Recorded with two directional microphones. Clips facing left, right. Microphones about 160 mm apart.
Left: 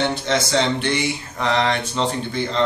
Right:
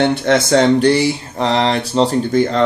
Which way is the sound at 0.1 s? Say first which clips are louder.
Right 7 dB; 60° right (ahead or behind).